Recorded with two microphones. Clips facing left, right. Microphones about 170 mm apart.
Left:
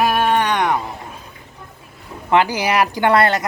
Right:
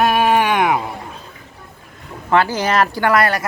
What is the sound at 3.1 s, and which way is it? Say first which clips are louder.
Speech: left 2 dB; 25° left (ahead or behind).